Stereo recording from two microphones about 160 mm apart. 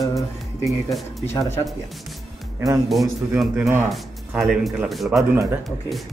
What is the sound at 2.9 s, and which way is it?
Speech, centre (ahead or behind).